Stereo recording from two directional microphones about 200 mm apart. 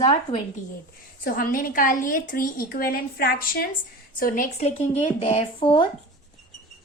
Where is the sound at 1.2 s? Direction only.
45° left (ahead or behind); by 5.9 s 25° left (ahead or behind).